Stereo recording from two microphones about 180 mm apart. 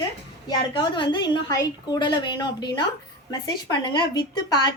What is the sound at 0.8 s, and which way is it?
A woman's voice, 25° left (ahead or behind).